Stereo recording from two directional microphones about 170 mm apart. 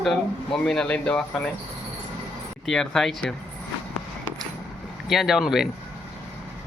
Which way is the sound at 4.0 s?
10° left (ahead or behind).